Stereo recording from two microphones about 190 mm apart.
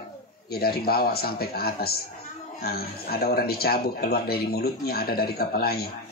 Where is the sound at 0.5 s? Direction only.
55° left (ahead or behind).